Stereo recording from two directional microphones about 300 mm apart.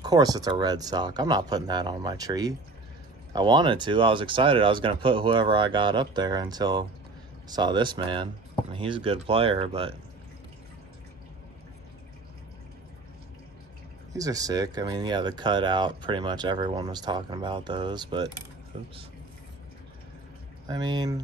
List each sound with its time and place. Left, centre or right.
0.0 s speech: centre
14.1 s speech: centre
20.6 s speech: centre